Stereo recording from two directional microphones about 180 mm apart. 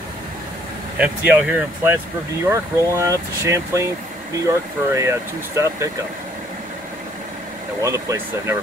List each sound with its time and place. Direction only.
0.9 s speech: 10° right (ahead or behind)
7.8 s speech: 15° right (ahead or behind)